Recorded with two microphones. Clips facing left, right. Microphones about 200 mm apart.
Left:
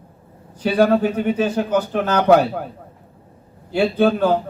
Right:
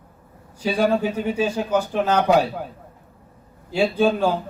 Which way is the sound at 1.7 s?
55° left (ahead or behind).